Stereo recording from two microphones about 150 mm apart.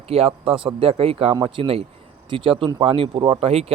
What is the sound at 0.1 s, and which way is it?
Speech, 40° right (ahead or behind).